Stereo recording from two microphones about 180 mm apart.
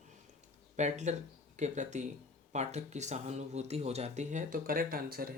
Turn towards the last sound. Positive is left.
turn(degrees=-55)  # may be behind; listen again after turning